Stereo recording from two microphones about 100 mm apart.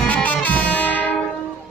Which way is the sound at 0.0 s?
15° left (ahead or behind).